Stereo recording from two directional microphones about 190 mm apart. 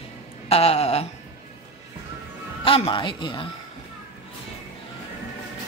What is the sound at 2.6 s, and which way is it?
Speech, 25° left (ahead or behind).